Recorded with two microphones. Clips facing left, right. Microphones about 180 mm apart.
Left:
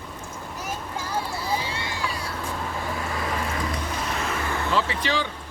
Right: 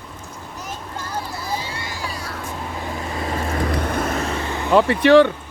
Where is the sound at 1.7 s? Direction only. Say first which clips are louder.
Even; 25° left (ahead or behind).